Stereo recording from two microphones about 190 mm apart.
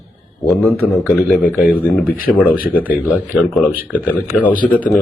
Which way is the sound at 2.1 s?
50° left (ahead or behind).